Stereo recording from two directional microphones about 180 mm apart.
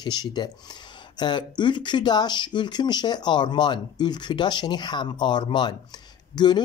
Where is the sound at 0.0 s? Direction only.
25° left (ahead or behind).